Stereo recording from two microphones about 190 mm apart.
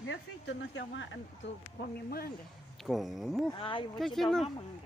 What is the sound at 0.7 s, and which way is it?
Speech, 75° left (ahead or behind).